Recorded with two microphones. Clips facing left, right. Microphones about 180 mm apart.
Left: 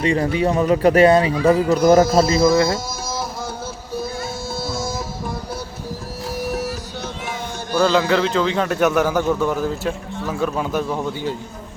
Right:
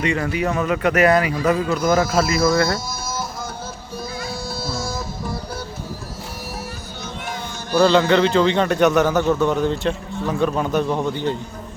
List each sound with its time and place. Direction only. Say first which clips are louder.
0.0 s speech: left 3 dB; 30° left (ahead or behind)
7.8 s a man's voice: right 2 dB; 5° left (ahead or behind)